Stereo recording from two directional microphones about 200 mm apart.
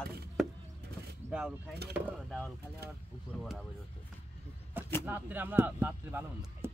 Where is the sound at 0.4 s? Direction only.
Centre (ahead or behind).